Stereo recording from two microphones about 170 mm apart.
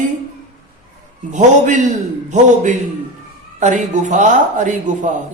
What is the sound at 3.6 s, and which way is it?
Speech, 45° right (ahead or behind).